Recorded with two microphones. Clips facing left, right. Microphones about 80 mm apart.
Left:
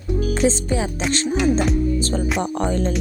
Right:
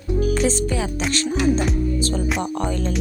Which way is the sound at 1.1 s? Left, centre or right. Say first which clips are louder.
Left 1 dB; left.